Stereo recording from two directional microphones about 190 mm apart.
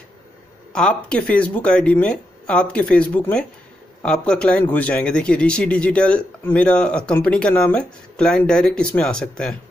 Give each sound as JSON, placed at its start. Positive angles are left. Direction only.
{"t": 0.7, "sound": "speech", "side_deg": 5}